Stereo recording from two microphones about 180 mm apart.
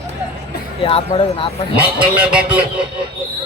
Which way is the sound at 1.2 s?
30° left (ahead or behind).